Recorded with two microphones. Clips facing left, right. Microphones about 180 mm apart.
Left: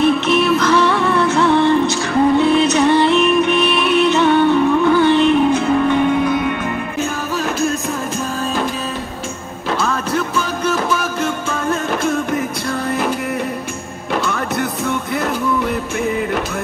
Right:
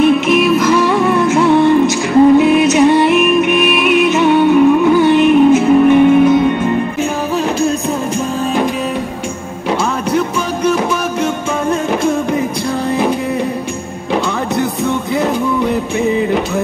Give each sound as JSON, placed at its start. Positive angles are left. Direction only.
{"t": 0.3, "sound": "music", "side_deg": -15}
{"t": 11.7, "sound": "music", "side_deg": -10}
{"t": 14.9, "sound": "music", "side_deg": -25}